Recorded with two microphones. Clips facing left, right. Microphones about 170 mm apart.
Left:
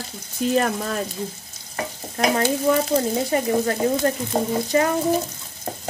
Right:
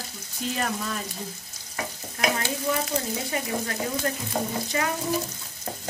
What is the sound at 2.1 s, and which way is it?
Stir, 40° left (ahead or behind).